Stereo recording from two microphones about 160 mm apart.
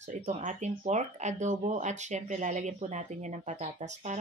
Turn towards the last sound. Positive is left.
turn(degrees=-50)  # may be behind; listen again after turning